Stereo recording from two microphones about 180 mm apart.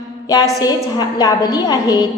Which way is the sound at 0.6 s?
20° left (ahead or behind).